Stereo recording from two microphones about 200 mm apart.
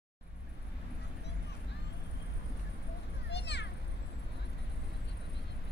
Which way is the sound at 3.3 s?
60° left (ahead or behind).